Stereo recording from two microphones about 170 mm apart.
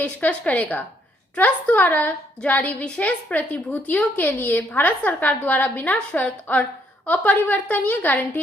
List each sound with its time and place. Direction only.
0.0 s a woman's voice: 10° left (ahead or behind)